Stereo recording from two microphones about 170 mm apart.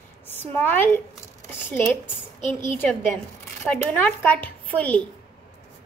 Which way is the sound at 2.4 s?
45° left (ahead or behind).